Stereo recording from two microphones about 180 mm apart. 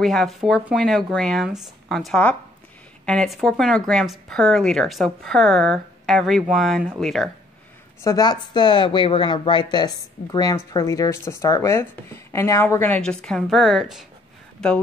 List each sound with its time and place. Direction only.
0.0 s speech: centre (ahead or behind)
8.0 s a woman's voice: 20° left (ahead or behind); by 14.0 s centre (ahead or behind)